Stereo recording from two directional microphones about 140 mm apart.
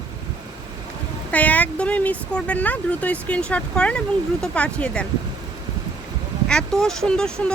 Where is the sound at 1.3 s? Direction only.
10° left (ahead or behind).